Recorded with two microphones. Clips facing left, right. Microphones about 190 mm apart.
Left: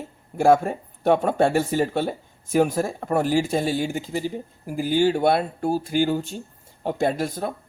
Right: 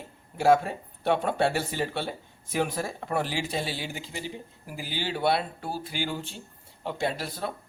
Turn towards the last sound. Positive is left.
turn(degrees=45)  # may be behind; listen again after turning